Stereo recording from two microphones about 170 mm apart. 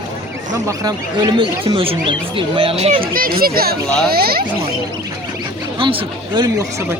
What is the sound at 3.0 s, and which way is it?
Speech, 60° right (ahead or behind).